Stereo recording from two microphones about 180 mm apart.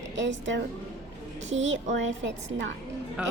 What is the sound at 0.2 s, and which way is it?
A woman's voice, 90° right.